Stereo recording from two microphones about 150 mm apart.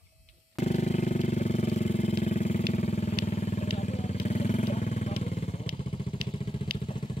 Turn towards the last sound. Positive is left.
turn(degrees=35)  # may be behind; listen again after turning